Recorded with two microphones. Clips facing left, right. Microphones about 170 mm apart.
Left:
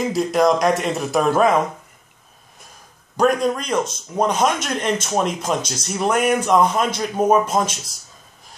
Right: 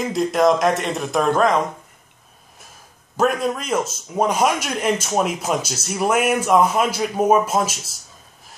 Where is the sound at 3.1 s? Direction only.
5° right (ahead or behind).